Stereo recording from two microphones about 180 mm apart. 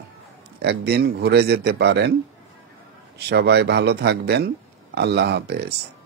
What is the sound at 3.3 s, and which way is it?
Speech, 70° right (ahead or behind).